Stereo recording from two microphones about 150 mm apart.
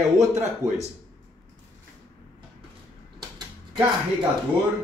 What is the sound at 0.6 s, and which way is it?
Speech, 45° right (ahead or behind).